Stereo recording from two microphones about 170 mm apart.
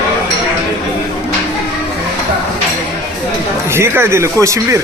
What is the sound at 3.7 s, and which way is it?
Speech, 15° right (ahead or behind).